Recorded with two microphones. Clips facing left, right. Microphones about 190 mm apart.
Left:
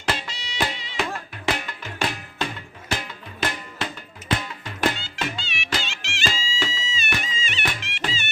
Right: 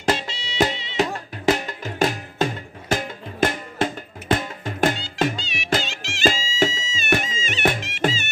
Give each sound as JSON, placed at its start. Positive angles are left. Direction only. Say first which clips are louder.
{"t": 0.2, "sound": "music", "louder": "right 6 dB", "side_deg": -25}
{"t": 0.9, "sound": "music", "louder": "right 6 dB", "side_deg": -40}